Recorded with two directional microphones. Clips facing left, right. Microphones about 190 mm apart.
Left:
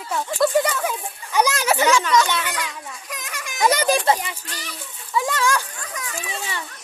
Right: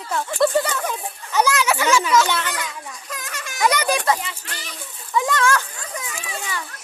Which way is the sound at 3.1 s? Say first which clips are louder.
Right 1 dB; 15° left (ahead or behind).